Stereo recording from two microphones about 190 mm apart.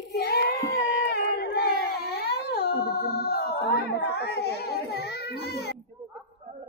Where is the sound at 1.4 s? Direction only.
55° left (ahead or behind).